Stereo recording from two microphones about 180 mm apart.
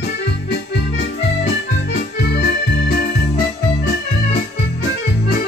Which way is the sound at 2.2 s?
60° left (ahead or behind).